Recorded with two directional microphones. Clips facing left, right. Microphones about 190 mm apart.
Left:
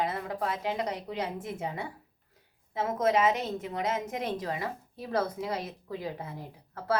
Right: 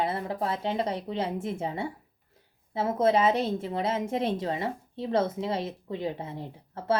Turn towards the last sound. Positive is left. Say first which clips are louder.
# right 4 dB
turn(degrees=-25)  # may be behind; listen again after turning